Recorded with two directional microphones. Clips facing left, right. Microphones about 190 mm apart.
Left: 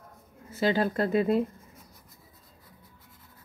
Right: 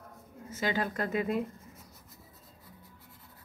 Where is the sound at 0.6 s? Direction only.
30° left (ahead or behind).